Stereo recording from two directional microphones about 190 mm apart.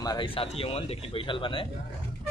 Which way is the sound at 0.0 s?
25° left (ahead or behind).